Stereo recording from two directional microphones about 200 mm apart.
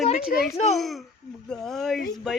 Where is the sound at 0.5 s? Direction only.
30° left (ahead or behind).